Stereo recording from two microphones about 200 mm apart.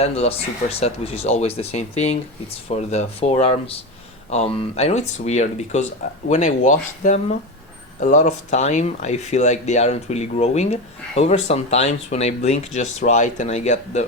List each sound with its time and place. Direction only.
0.0 s speech: 30° left (ahead or behind)